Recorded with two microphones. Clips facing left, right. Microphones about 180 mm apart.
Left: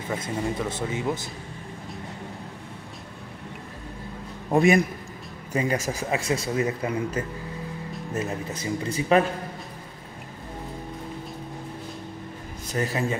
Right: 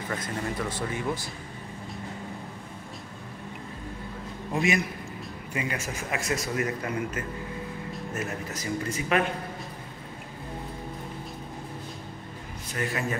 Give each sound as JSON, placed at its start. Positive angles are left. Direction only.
{"t": 0.1, "sound": "speech", "side_deg": 10}
{"t": 0.6, "sound": "a man's voice", "side_deg": 25}
{"t": 4.5, "sound": "a man's voice", "side_deg": 50}
{"t": 5.5, "sound": "a man's voice", "side_deg": 35}
{"t": 12.7, "sound": "a man's voice", "side_deg": 30}